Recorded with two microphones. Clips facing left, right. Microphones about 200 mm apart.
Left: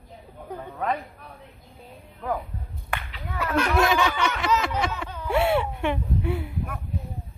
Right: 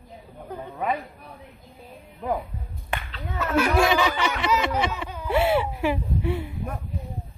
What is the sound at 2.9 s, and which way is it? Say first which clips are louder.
Whip: right 1 dB; 25° right (ahead or behind).